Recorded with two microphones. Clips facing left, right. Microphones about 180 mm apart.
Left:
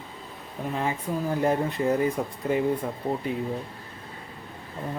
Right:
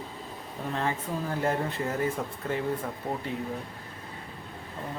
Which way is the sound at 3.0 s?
30° left (ahead or behind).